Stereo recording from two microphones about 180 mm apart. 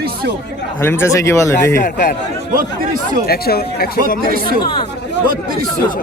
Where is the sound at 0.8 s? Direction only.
15° left (ahead or behind).